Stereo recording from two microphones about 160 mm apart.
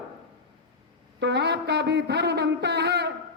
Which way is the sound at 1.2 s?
90° right.